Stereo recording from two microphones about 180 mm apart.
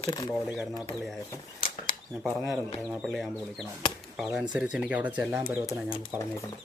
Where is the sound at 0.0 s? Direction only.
25° left (ahead or behind).